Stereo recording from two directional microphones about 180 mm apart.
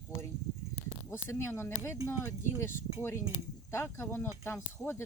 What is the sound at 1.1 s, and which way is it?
Speech, 15° left (ahead or behind).